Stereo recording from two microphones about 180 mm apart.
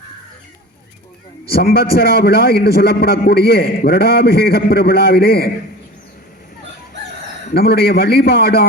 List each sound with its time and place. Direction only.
1.5 s a man's voice: 60° left (ahead or behind)
7.5 s a man's voice: 60° left (ahead or behind)